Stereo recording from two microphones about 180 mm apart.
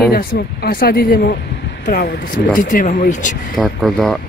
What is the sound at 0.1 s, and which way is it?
Speech, 55° left (ahead or behind).